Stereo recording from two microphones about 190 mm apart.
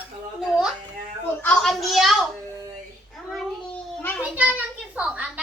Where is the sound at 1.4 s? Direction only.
5° left (ahead or behind).